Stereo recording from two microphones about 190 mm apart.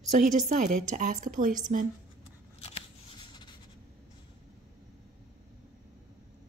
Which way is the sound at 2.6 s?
25° left (ahead or behind).